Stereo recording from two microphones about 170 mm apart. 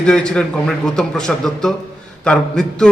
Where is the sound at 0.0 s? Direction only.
5° left (ahead or behind).